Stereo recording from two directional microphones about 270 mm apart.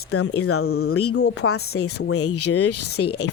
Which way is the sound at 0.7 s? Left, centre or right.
Left.